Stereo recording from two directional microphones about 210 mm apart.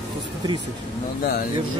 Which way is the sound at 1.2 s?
50° left (ahead or behind).